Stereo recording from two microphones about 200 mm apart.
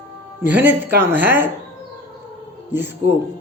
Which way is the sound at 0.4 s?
10° right (ahead or behind).